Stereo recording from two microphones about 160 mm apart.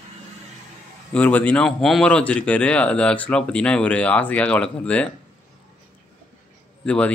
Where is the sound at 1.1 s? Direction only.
10° left (ahead or behind).